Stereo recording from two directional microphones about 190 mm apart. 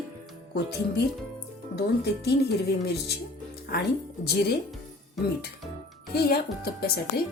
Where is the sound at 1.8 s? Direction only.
60° left (ahead or behind).